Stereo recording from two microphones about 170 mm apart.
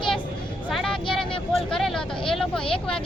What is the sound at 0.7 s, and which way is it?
Speech, centre (ahead or behind).